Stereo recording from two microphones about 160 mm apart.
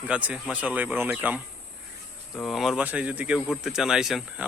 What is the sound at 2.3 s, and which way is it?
Speech, centre (ahead or behind).